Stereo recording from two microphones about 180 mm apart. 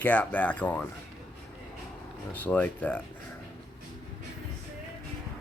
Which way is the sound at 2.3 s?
10° left (ahead or behind).